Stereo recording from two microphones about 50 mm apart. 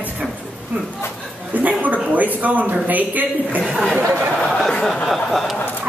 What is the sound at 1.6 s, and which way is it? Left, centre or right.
Speech, right.